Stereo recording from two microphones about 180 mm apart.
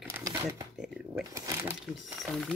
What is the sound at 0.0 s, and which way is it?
Shuffling cards, 15° right (ahead or behind).